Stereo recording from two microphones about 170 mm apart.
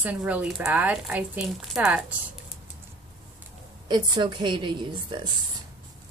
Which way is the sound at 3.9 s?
25° right (ahead or behind).